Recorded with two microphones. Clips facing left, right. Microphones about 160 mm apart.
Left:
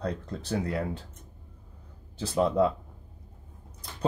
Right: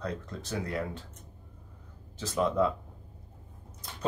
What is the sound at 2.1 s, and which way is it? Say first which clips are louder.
Speech: left 3 dB; 30° left (ahead or behind).